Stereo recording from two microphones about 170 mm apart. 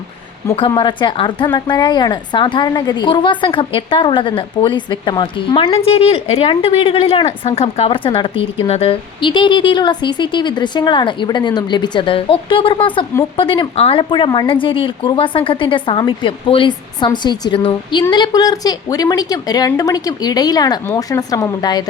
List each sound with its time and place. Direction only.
0.4 s speech: 15° left (ahead or behind)
0.8 s a woman's voice: 25° left (ahead or behind)